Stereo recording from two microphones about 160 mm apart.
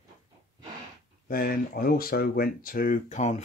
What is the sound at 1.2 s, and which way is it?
Speech, 60° left (ahead or behind).